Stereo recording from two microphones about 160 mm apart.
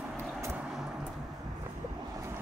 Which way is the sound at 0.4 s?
15° right (ahead or behind).